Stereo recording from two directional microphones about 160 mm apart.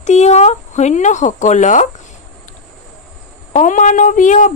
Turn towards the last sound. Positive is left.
turn(degrees=50)  # may be behind; listen again after turning